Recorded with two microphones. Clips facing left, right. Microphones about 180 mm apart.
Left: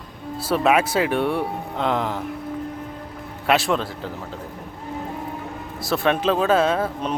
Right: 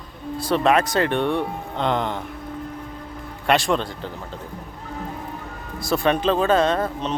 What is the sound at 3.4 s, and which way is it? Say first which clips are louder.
Speech: even; 5° left (ahead or behind).